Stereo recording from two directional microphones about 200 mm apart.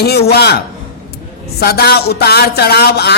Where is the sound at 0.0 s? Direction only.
55° left (ahead or behind).